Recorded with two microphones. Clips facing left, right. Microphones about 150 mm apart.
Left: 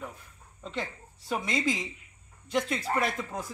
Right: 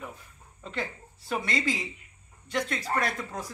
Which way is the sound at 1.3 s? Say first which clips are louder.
Even; centre (ahead or behind).